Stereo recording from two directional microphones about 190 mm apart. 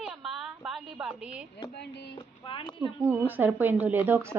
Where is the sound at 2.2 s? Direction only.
25° left (ahead or behind).